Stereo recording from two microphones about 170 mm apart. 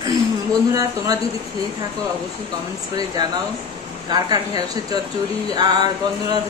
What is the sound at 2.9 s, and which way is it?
Speech, 20° right (ahead or behind).